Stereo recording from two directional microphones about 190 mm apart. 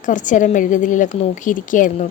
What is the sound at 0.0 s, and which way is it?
A woman's voice, 40° left (ahead or behind).